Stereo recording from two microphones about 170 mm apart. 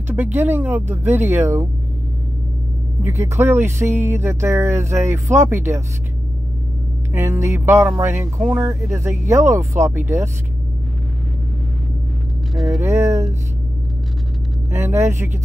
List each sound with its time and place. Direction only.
0.1 s speech: 10° right (ahead or behind)
3.0 s speech: 15° right (ahead or behind)
7.1 s speech: 15° right (ahead or behind)
12.5 s speech: centre (ahead or behind)
12.8 s speech: 15° right (ahead or behind)
14.7 s speech: 15° right (ahead or behind)